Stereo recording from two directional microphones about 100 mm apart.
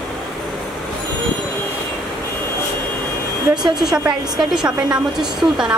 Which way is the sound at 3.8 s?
5° right (ahead or behind).